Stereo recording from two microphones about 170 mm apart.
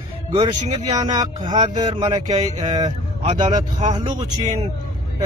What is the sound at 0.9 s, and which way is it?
Speech, 25° right (ahead or behind).